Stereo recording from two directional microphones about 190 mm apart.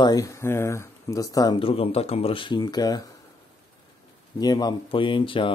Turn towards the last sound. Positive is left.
turn(degrees=25)  # may be behind; listen again after turning